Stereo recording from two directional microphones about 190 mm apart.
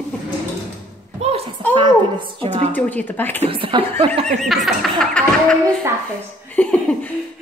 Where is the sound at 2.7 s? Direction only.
10° left (ahead or behind).